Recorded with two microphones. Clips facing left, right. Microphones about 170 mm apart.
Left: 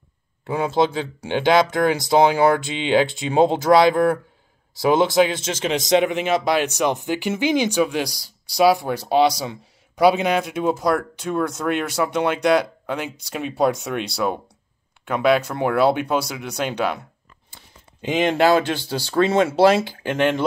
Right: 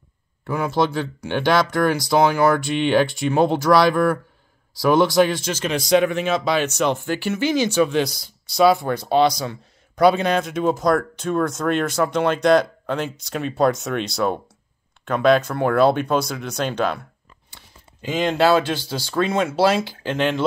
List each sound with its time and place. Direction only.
0.5 s speech: 20° left (ahead or behind)
18.0 s speech: 20° left (ahead or behind)